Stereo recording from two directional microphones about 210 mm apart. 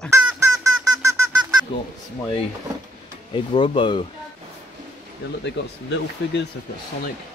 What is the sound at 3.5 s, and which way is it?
Speech, 25° left (ahead or behind).